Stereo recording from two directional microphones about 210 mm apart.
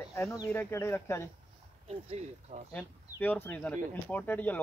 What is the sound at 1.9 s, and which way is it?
Speech, 30° right (ahead or behind).